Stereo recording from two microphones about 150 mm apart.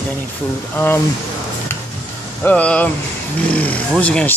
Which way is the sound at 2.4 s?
10° left (ahead or behind).